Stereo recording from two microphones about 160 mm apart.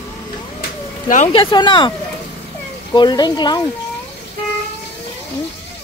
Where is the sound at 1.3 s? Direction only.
30° left (ahead or behind).